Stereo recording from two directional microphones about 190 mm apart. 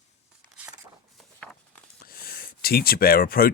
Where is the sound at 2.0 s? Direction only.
50° left (ahead or behind).